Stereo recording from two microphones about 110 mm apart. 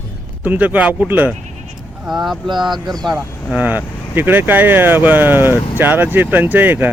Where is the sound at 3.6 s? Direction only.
15° right (ahead or behind).